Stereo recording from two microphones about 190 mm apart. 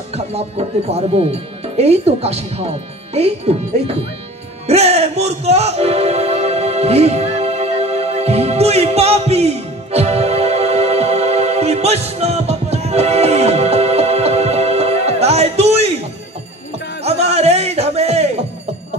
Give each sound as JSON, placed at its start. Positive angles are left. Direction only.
{"t": 0.1, "sound": "speech", "side_deg": -35}
{"t": 4.6, "sound": "music", "side_deg": -35}
{"t": 17.0, "sound": "music", "side_deg": -35}